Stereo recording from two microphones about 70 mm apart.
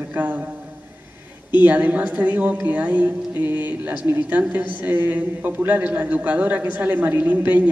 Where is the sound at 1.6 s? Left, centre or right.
Right.